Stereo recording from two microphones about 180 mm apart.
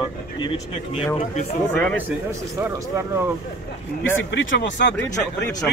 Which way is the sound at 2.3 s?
15° right (ahead or behind).